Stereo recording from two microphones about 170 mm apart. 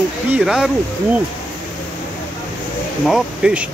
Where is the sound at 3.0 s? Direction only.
5° right (ahead or behind).